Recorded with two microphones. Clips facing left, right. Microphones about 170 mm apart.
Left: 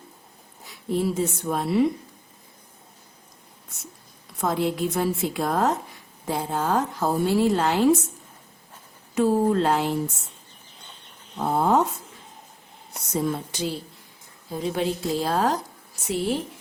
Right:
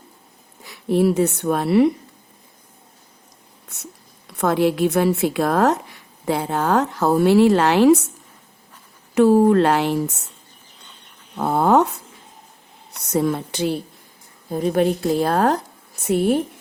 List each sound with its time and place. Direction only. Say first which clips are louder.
0.6 s speech: right 7 dB; 75° right (ahead or behind)
4.4 s a woman's voice: right 6 dB; 75° right (ahead or behind)
9.1 s a woman's voice: right 7 dB; 70° right (ahead or behind)
11.3 s a woman's voice: right 5 dB; 70° right (ahead or behind)
13.1 s a woman's voice: right 6 dB; 70° right (ahead or behind)
14.5 s a woman's voice: right 7 dB; 50° right (ahead or behind)